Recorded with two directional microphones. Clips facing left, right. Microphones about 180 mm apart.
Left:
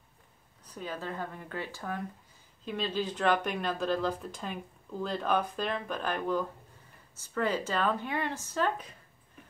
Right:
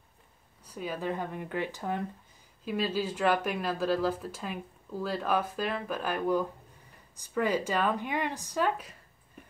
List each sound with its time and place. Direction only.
0.7 s speech: 10° right (ahead or behind)
2.6 s speech: 5° right (ahead or behind)